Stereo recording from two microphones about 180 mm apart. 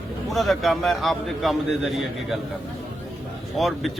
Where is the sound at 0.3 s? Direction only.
Centre (ahead or behind).